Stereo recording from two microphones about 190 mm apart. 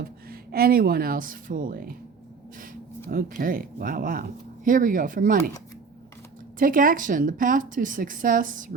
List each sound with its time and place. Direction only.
0.0 s speech: 50° right (ahead or behind)
3.1 s speech: 50° right (ahead or behind)
6.6 s speech: 45° right (ahead or behind)